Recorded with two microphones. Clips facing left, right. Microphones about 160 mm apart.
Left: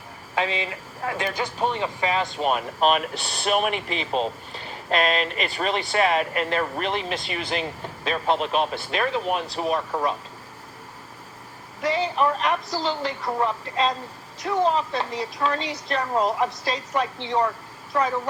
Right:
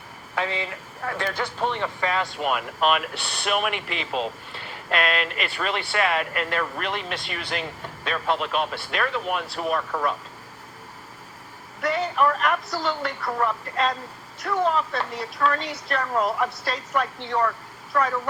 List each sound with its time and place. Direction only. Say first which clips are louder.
0.3 s speech: left 2 dB; 20° left (ahead or behind)
2.5 s speech: left 2 dB; 35° left (ahead or behind)
8.0 s speech: left 2 dB; 35° left (ahead or behind)
12.1 s speech: even; 25° left (ahead or behind)